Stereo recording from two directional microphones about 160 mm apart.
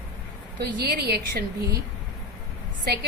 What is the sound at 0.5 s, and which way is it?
Speech, 90° right.